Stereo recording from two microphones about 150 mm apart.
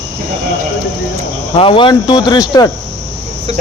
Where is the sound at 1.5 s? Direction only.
35° left (ahead or behind).